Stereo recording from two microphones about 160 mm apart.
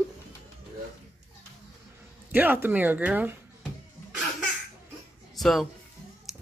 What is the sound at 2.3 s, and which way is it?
Speech, 10° right (ahead or behind).